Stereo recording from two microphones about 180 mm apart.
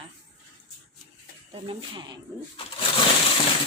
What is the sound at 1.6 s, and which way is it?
Speech, 25° right (ahead or behind).